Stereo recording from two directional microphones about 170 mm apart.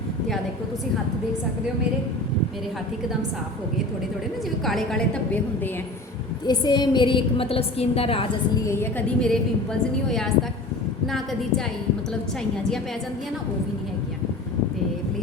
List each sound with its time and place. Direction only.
4.6 s a woman's voice: centre (ahead or behind)
6.4 s a woman's voice: 25° left (ahead or behind)
8.6 s a woman's voice: 15° left (ahead or behind)
11.0 s a woman's voice: centre (ahead or behind)